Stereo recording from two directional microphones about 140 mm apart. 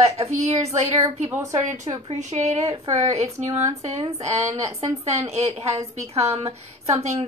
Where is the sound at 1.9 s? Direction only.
40° right (ahead or behind).